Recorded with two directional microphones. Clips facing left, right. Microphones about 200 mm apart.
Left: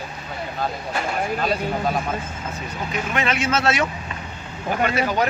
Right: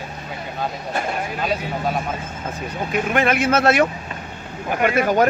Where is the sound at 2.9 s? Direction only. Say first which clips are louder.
Right 5 dB; 55° right (ahead or behind).